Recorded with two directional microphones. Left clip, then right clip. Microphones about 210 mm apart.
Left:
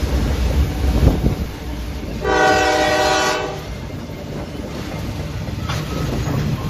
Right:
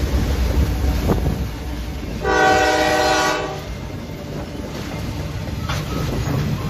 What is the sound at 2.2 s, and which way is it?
Train, 20° right (ahead or behind).